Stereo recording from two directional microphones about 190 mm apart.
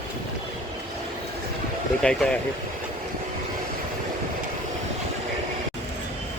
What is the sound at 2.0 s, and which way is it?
Speech, 5° left (ahead or behind).